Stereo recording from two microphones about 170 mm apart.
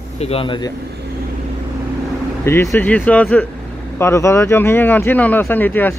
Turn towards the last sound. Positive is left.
turn(degrees=10)  # may be behind; listen again after turning